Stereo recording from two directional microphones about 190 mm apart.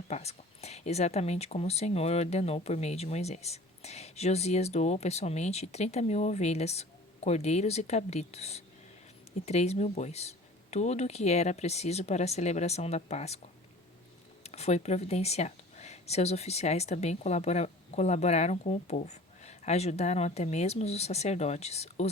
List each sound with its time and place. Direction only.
0.1 s speech: 35° left (ahead or behind)
14.4 s speech: 35° left (ahead or behind)